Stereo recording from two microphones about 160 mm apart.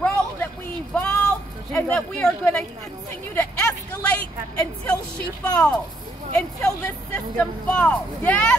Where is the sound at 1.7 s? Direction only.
10° left (ahead or behind).